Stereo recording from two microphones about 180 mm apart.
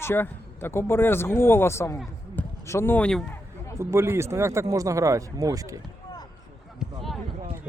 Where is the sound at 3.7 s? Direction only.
15° right (ahead or behind).